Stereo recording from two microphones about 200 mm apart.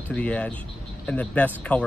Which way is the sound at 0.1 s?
5° left (ahead or behind).